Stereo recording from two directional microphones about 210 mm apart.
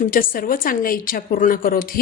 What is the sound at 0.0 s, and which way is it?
A woman's voice, 40° left (ahead or behind).